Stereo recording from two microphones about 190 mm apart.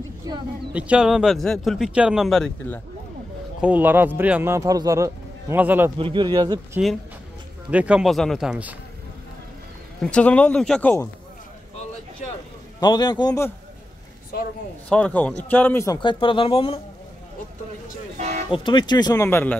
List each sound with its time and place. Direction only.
0.7 s speech: 5° right (ahead or behind)
3.6 s speech: 10° right (ahead or behind)
5.9 s speech: 25° right (ahead or behind)
7.7 s speech: 5° right (ahead or behind)
10.0 s speech: 5° left (ahead or behind)
12.8 s a man's voice: 25° left (ahead or behind)
14.9 s a man's voice: 5° left (ahead or behind); by 16.8 s 30° left (ahead or behind)
18.1 s vehicle: 40° right (ahead or behind)
18.5 s a man's voice: 25° left (ahead or behind)